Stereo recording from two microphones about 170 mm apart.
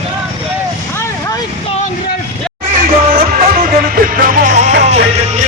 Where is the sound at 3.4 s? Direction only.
55° right (ahead or behind).